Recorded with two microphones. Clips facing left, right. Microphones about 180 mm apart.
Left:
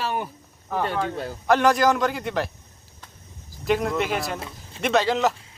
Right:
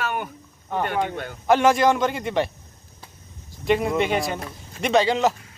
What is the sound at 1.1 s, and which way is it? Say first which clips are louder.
Speech: left 1 dB; 30° left (ahead or behind).